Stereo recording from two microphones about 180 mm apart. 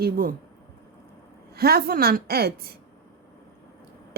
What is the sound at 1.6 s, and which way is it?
Speech, 60° right (ahead or behind).